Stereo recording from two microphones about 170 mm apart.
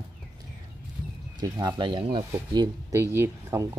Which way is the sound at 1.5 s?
25° right (ahead or behind).